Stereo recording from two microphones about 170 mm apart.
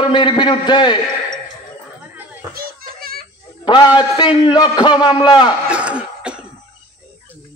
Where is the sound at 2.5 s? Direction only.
60° right (ahead or behind).